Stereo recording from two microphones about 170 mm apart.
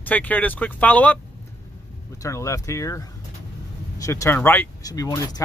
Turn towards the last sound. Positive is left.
turn(degrees=20)  # may be behind; listen again after turning